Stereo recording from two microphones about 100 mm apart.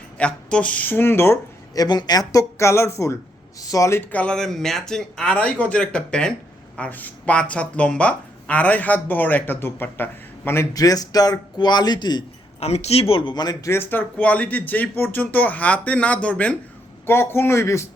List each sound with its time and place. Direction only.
0.2 s speech: 10° left (ahead or behind)
1.7 s speech: 40° left (ahead or behind)
4.1 s speech: 10° left (ahead or behind)
10.8 s speech: 35° left (ahead or behind)
12.5 s a man's voice: 90° left; by 13.6 s 45° left (ahead or behind)
13.7 s speech: 20° left (ahead or behind)
17.1 s a man's voice: 25° left (ahead or behind)